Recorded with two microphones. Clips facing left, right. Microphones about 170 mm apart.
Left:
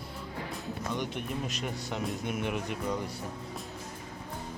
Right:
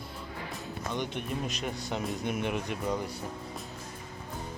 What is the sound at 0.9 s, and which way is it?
Speech, 5° left (ahead or behind).